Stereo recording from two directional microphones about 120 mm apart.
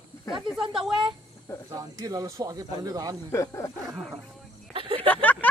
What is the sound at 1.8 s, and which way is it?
Speech, 30° right (ahead or behind).